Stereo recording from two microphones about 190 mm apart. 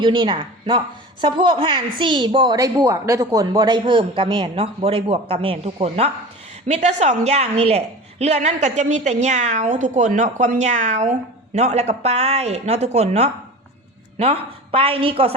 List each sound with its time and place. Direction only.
0.0 s a woman's voice: 25° right (ahead or behind)